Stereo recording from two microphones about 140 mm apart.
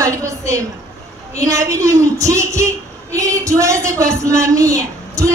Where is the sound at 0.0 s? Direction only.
20° right (ahead or behind).